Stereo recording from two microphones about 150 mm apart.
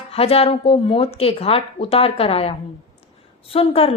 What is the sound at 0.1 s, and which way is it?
Speech, 40° left (ahead or behind).